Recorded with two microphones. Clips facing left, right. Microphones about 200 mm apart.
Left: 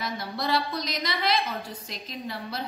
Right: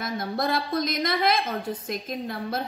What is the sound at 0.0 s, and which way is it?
A woman's voice, 50° right (ahead or behind).